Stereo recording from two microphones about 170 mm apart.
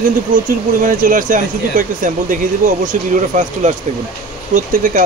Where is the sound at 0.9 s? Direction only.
55° right (ahead or behind).